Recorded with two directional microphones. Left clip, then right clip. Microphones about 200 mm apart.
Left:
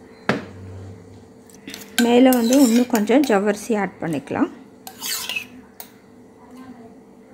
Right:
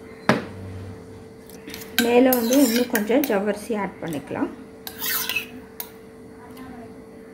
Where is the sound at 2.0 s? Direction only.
40° left (ahead or behind).